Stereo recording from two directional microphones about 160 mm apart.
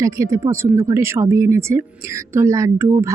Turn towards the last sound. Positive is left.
turn(degrees=-15)  # may be behind; listen again after turning